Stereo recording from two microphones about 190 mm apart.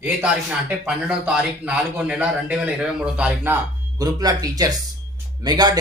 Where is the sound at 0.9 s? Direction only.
5° right (ahead or behind).